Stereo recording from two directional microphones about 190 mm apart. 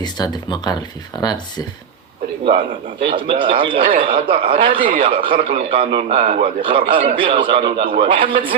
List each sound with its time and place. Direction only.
0.0 s speech: 20° left (ahead or behind)
3.0 s a man's voice: 25° right (ahead or behind)